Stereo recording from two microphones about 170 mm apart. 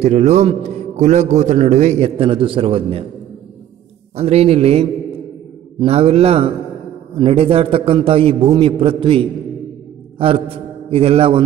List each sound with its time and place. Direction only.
0.0 s a man's voice: 45° right (ahead or behind)
4.2 s a man's voice: 35° right (ahead or behind)